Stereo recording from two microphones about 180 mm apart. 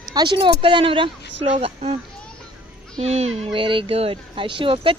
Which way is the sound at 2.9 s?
40° right (ahead or behind).